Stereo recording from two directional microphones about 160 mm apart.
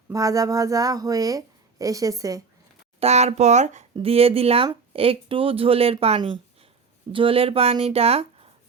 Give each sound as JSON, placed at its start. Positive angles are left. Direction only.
{"t": 0.1, "sound": "a woman's voice", "side_deg": -20}
{"t": 3.0, "sound": "speech", "side_deg": -45}